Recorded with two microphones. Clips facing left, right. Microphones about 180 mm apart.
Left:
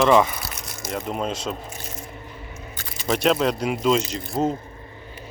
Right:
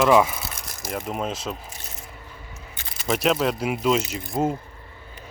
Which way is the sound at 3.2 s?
5° right (ahead or behind).